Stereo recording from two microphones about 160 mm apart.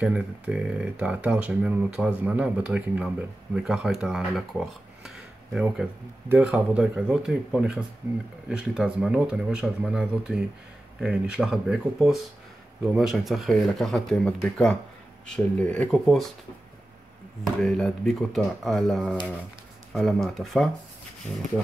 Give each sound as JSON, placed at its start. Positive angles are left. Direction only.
{"t": 0.0, "sound": "speech", "side_deg": -5}
{"t": 17.6, "sound": "speech", "side_deg": 0}